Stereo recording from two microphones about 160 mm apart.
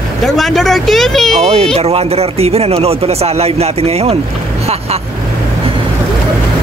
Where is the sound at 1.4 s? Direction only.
40° right (ahead or behind).